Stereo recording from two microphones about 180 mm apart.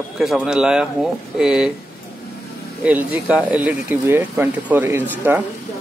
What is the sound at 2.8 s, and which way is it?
Speech, 10° right (ahead or behind).